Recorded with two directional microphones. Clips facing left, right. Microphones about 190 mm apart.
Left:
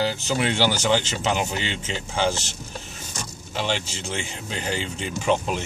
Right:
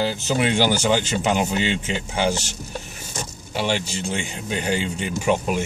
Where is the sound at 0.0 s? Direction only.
15° right (ahead or behind).